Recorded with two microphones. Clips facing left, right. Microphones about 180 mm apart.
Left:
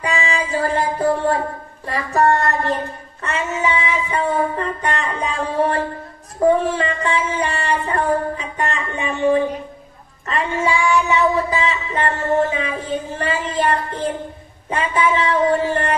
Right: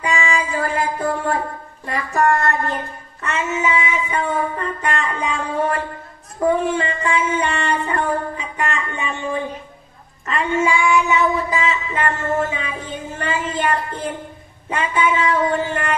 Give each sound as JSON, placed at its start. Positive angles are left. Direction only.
{"t": 0.0, "sound": "music", "side_deg": 35}
{"t": 1.9, "sound": "child singing", "side_deg": 35}